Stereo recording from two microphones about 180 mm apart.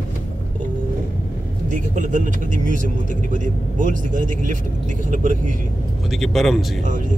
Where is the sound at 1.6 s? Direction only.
45° right (ahead or behind).